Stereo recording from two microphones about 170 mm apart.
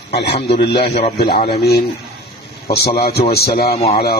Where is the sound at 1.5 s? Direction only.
70° left (ahead or behind).